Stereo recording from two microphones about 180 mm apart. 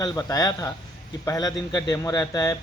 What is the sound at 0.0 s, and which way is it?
Speech, 20° left (ahead or behind).